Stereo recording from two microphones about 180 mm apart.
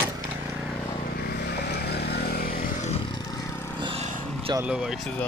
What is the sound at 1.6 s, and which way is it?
Vehicle, 65° left (ahead or behind).